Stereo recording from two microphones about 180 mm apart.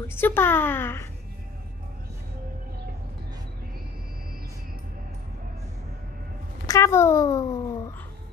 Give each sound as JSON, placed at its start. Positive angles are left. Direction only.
{"t": 0.1, "sound": "a woman's voice", "side_deg": 10}
{"t": 6.6, "sound": "a woman's voice", "side_deg": 15}